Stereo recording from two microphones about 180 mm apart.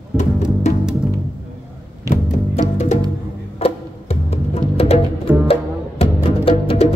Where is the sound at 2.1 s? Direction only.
40° left (ahead or behind).